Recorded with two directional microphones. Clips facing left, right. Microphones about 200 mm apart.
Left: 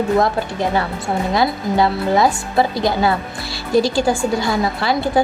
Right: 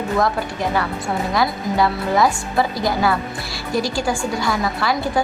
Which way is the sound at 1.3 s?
25° left (ahead or behind).